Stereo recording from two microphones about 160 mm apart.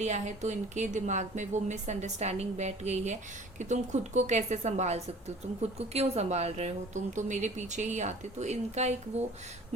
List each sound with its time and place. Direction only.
0.0 s a woman's voice: 45° right (ahead or behind)